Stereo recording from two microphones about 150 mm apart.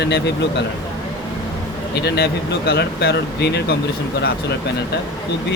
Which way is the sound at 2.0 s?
90° left.